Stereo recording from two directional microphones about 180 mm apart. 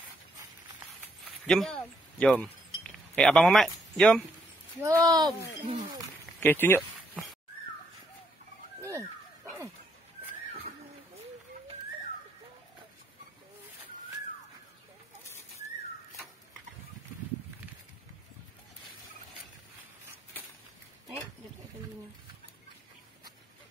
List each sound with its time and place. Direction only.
1.4 s speech: centre (ahead or behind)
2.1 s chink: 5° left (ahead or behind)
5.0 s speech: 20° right (ahead or behind)
6.4 s speech: 10° left (ahead or behind)
8.8 s dog: 15° right (ahead or behind)